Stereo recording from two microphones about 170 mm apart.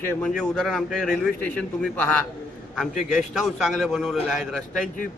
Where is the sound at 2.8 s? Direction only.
Centre (ahead or behind).